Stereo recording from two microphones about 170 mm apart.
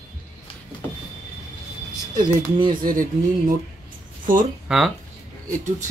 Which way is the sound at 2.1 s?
25° right (ahead or behind).